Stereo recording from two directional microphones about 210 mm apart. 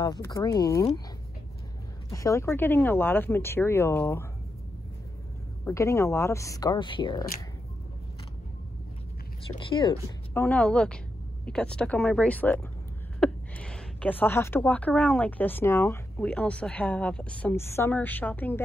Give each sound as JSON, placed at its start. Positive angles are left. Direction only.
{"t": 0.0, "sound": "speech", "side_deg": 15}
{"t": 2.0, "sound": "speech", "side_deg": 15}
{"t": 5.7, "sound": "speech", "side_deg": 15}
{"t": 9.6, "sound": "speech", "side_deg": 20}
{"t": 10.3, "sound": "speech", "side_deg": 5}